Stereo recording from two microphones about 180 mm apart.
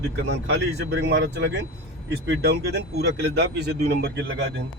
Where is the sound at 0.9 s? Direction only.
80° right.